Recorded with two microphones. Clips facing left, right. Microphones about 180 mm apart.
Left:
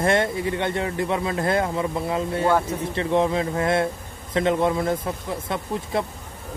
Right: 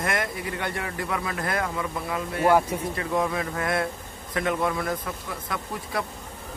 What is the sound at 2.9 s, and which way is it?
A man's voice, 25° left (ahead or behind).